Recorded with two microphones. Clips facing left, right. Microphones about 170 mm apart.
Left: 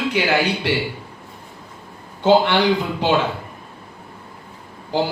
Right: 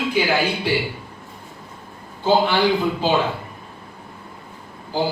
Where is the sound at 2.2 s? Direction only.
75° left (ahead or behind).